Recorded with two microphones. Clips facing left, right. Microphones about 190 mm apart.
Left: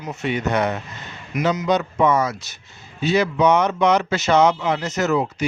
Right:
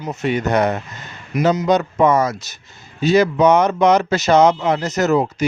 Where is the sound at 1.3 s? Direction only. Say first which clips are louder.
Right 4 dB; 30° right (ahead or behind).